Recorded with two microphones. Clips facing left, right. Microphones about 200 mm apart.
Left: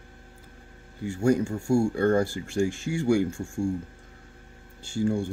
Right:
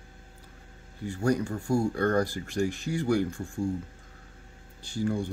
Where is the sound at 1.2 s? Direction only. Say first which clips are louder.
Left 4 dB; 25° left (ahead or behind).